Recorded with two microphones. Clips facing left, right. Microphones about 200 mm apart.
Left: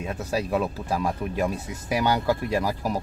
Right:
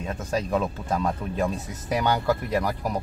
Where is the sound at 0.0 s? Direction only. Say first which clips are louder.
Even; 10° left (ahead or behind).